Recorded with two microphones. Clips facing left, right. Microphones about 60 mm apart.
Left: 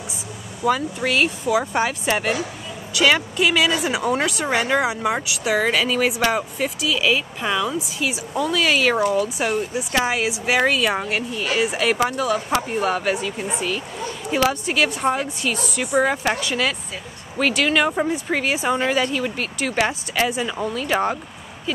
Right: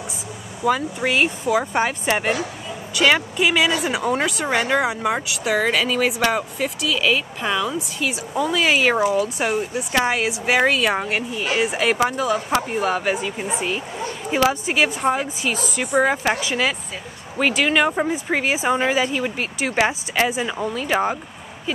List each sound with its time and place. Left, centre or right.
0.7 s speech: centre
8.5 s speech: centre
8.9 s speech: centre
15.0 s speech: centre
19.9 s speech: centre